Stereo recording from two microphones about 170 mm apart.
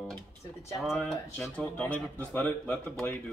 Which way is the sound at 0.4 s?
15° left (ahead or behind).